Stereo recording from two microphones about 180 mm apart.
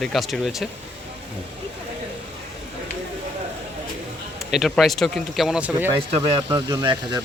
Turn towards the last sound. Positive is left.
turn(degrees=-25)  # may be behind; listen again after turning